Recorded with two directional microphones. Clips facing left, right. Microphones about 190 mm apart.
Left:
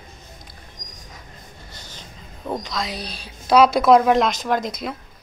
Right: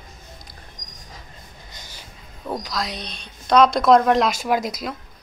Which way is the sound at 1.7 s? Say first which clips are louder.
Left 1 dB; 10° right (ahead or behind).